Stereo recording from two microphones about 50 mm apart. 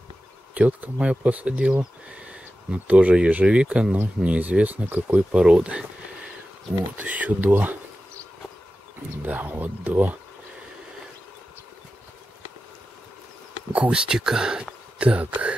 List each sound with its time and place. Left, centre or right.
0.6 s speech: right
5.3 s speech: centre
7.0 s speech: right
9.2 s speech: right
13.7 s speech: centre
15.0 s speech: right